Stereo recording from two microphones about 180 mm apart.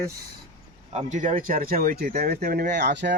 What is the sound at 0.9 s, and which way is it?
Speech, 40° right (ahead or behind).